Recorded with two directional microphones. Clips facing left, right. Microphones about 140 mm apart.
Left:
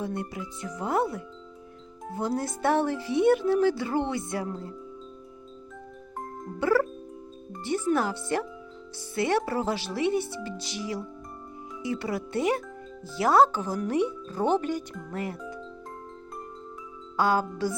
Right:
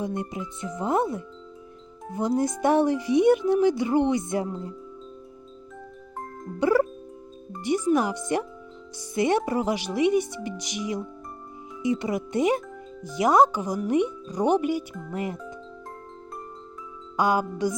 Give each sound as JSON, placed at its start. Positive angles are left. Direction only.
{"t": 0.0, "sound": "speech", "side_deg": -20}
{"t": 6.6, "sound": "speech", "side_deg": -20}
{"t": 17.2, "sound": "speech", "side_deg": -15}